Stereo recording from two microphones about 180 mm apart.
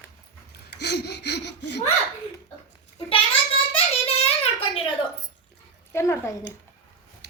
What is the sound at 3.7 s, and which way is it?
Child singing, 35° left (ahead or behind).